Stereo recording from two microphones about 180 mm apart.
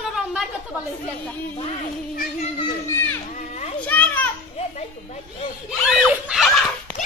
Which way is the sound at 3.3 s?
40° left (ahead or behind).